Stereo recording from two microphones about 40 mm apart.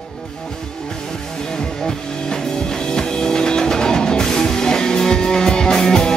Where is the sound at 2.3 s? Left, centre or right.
Centre.